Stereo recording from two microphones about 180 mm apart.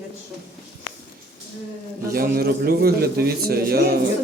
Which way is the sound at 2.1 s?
60° right (ahead or behind).